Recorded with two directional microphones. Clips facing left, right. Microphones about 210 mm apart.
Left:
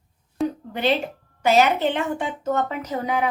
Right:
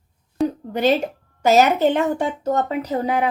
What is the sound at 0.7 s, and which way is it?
Speech, 40° right (ahead or behind).